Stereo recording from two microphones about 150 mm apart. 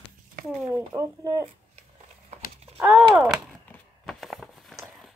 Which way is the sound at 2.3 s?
45° right (ahead or behind).